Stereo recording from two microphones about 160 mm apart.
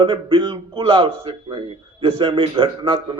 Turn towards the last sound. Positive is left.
turn(degrees=-35)  # may be behind; listen again after turning